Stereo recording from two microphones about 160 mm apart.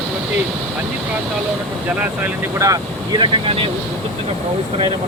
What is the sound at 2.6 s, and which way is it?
Speech, 25° right (ahead or behind).